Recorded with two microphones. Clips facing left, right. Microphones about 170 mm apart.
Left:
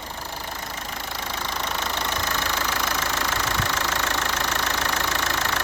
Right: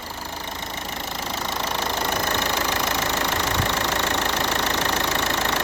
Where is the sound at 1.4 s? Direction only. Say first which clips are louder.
Right 2 dB; 25° right (ahead or behind).